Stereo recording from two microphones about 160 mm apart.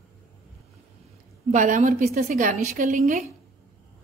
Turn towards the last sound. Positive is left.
turn(degrees=-55)  # may be behind; listen again after turning